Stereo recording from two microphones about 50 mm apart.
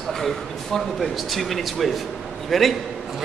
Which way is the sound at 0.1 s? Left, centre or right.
Centre.